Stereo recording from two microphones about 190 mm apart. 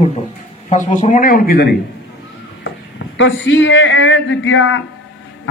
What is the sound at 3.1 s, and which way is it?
Speech, 70° left (ahead or behind).